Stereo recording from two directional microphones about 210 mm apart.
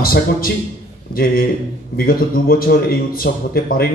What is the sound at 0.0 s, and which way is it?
Speech, 45° left (ahead or behind).